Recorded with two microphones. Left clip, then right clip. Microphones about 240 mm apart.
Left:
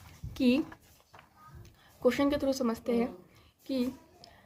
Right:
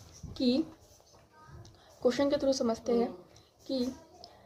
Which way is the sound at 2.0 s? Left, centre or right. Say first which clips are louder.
Even; left.